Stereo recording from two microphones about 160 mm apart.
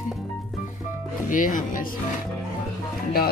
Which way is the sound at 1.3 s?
55° left (ahead or behind).